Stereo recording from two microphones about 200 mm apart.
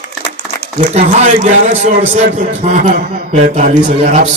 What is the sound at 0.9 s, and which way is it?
Speech, 35° right (ahead or behind).